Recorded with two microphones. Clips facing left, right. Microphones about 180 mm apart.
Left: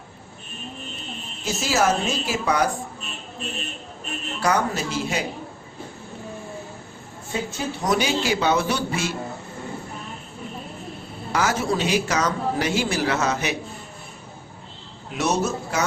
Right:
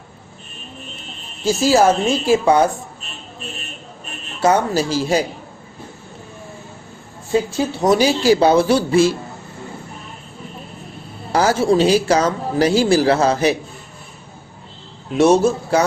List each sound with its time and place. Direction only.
1.5 s speech: 30° right (ahead or behind)
4.4 s a man's voice: 25° right (ahead or behind)
7.9 s a man's voice: 35° right (ahead or behind)
11.3 s a man's voice: 35° right (ahead or behind)
15.2 s a man's voice: 30° right (ahead or behind)